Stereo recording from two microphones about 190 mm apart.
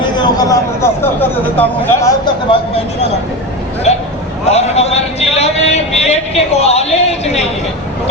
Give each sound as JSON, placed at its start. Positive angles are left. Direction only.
{"t": 0.2, "sound": "speech", "side_deg": 20}
{"t": 2.5, "sound": "a man's voice", "side_deg": 30}
{"t": 4.4, "sound": "a man's voice", "side_deg": 35}